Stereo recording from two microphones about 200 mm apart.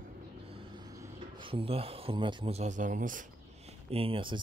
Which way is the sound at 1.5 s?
30° right (ahead or behind).